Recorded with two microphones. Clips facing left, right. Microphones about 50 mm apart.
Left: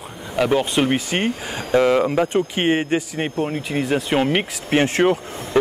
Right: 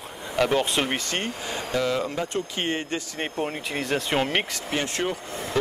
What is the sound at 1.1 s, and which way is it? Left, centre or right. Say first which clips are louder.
Speech: left 6 dB; left.